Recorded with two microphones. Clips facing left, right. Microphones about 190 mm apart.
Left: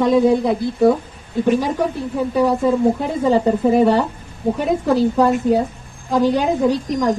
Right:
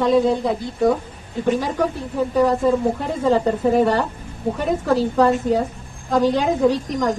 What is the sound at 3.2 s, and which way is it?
A woman's voice, 10° left (ahead or behind).